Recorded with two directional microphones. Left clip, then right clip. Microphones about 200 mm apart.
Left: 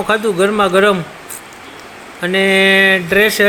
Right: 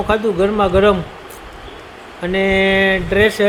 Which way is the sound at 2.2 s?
Centre (ahead or behind).